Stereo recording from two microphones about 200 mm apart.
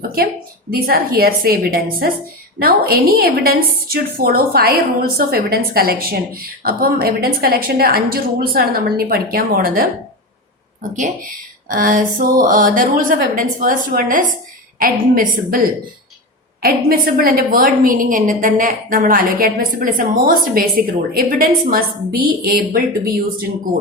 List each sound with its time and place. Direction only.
0.7 s a woman's voice: 45° right (ahead or behind)
10.9 s a woman's voice: 40° right (ahead or behind)